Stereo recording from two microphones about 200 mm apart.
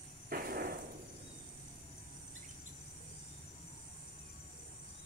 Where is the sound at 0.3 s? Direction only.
45° right (ahead or behind).